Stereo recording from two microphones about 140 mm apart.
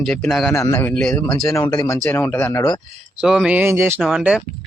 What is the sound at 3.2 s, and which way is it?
Speech, 5° right (ahead or behind).